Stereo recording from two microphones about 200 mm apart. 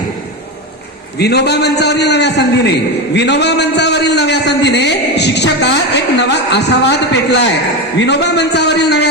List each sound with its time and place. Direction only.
1.2 s a man's voice: 55° left (ahead or behind)
7.9 s a man's voice: 60° left (ahead or behind)